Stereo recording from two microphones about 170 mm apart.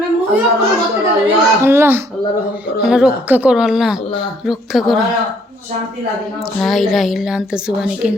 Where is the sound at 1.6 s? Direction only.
15° right (ahead or behind).